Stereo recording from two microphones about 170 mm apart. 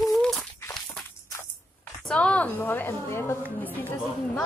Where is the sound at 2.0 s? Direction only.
5° left (ahead or behind).